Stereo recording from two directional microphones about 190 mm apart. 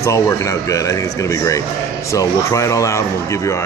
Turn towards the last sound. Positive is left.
turn(degrees=15)  # may be behind; listen again after turning